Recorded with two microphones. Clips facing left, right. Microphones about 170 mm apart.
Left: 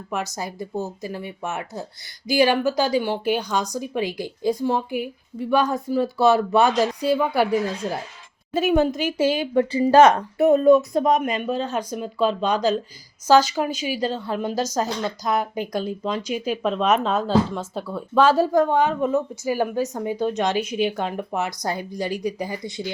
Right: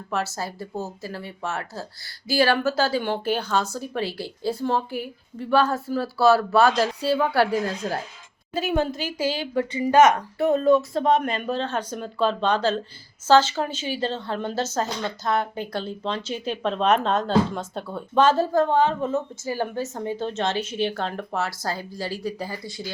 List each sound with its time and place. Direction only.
0.1 s a woman's voice: 15° left (ahead or behind)
11.2 s speech: 5° left (ahead or behind)